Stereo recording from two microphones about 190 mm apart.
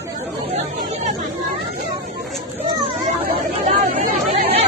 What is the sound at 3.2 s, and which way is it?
Chatter, 50° right (ahead or behind).